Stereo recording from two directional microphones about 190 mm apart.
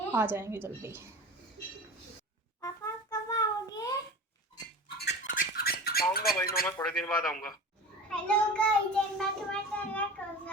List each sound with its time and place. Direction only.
0.1 s a woman's voice: 10° right (ahead or behind)
2.6 s a sound: 15° left (ahead or behind)
5.2 s a sound: 45° left (ahead or behind)
6.3 s speech: 55° left (ahead or behind)
6.7 s a man's voice: 10° left (ahead or behind)
10.2 s child singing: 5° left (ahead or behind)